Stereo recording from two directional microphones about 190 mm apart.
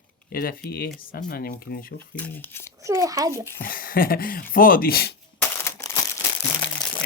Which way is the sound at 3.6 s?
50° left (ahead or behind).